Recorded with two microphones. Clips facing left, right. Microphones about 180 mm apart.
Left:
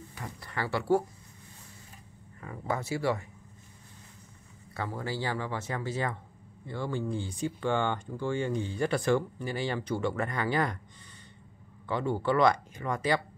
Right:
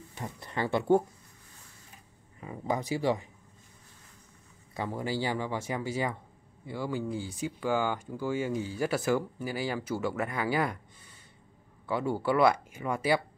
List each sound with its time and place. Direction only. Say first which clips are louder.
0.1 s speech: right 3 dB; 25° right (ahead or behind)
2.4 s speech: right 2 dB; 15° right (ahead or behind)
4.7 s speech: right 2 dB; 15° right (ahead or behind)
11.8 s speech: even; 10° right (ahead or behind)